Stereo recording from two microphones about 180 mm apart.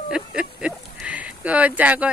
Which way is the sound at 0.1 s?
5° right (ahead or behind).